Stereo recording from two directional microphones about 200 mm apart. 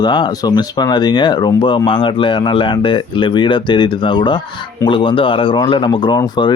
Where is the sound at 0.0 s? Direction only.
20° left (ahead or behind).